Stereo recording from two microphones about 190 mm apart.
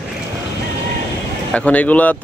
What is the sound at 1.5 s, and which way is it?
Speech, 5° left (ahead or behind).